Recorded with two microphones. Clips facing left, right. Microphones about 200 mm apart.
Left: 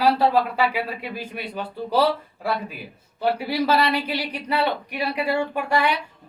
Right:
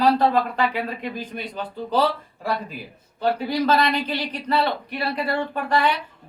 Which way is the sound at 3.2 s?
10° left (ahead or behind).